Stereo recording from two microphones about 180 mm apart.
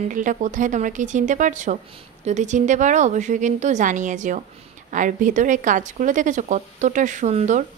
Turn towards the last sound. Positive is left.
turn(degrees=-40)  # may be behind; listen again after turning